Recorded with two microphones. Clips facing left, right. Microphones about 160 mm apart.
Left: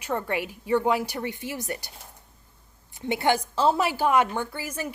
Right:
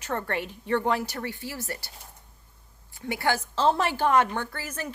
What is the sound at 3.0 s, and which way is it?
A woman's voice, 20° left (ahead or behind).